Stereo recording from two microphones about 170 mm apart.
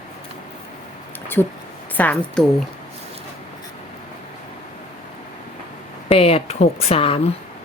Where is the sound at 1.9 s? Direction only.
5° left (ahead or behind).